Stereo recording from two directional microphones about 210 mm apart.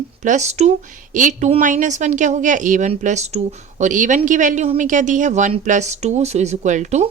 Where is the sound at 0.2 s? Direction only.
35° right (ahead or behind).